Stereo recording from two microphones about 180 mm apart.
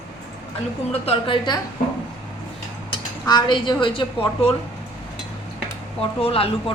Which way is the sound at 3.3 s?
25° left (ahead or behind).